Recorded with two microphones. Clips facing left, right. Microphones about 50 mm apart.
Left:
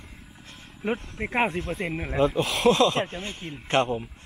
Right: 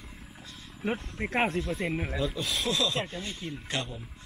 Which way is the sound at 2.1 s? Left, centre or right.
Left.